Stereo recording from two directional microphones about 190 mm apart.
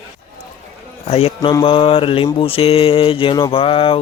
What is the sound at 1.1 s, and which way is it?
Speech, 30° left (ahead or behind).